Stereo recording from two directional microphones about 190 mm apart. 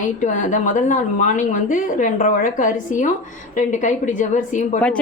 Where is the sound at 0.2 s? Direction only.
40° left (ahead or behind).